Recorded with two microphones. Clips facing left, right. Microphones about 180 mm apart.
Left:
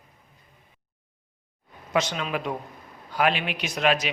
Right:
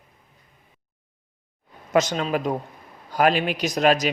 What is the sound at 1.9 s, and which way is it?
Speech, 40° right (ahead or behind).